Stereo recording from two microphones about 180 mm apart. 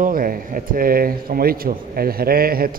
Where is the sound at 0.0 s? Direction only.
50° right (ahead or behind).